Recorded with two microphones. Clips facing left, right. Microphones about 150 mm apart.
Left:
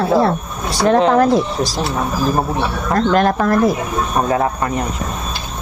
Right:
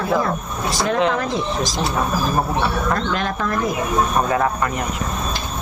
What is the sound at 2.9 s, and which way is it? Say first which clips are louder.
Speech: left 8 dB; 45° left (ahead or behind).